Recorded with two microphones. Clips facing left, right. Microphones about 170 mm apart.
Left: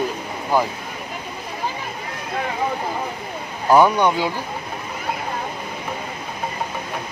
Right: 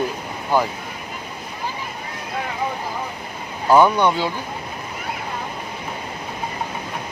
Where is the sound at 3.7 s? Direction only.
10° left (ahead or behind).